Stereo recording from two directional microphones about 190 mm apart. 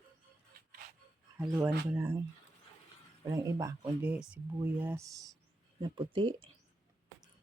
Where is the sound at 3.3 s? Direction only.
15° right (ahead or behind).